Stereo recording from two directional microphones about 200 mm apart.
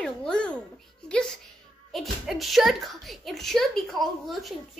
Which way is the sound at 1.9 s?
Centre (ahead or behind).